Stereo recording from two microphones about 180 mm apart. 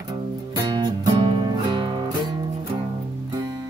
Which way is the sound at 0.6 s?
20° right (ahead or behind).